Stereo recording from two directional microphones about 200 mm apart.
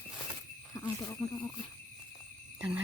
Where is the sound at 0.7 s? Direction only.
15° left (ahead or behind).